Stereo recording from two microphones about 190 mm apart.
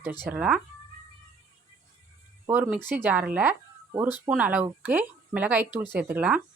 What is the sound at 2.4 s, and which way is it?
Speech, 15° right (ahead or behind).